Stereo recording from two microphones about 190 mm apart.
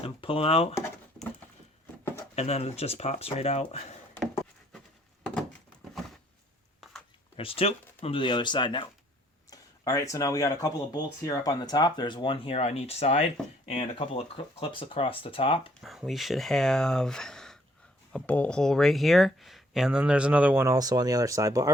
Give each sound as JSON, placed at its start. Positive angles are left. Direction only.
{"t": 0.0, "sound": "speech", "side_deg": 30}
{"t": 2.3, "sound": "speech", "side_deg": 35}
{"t": 5.2, "sound": "a sound", "side_deg": 5}
{"t": 7.3, "sound": "speech", "side_deg": 30}
{"t": 15.8, "sound": "speech", "side_deg": 0}